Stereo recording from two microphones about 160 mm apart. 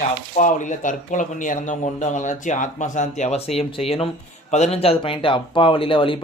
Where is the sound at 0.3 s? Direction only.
50° left (ahead or behind).